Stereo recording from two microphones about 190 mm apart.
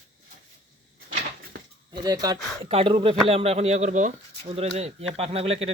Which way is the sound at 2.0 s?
20° right (ahead or behind).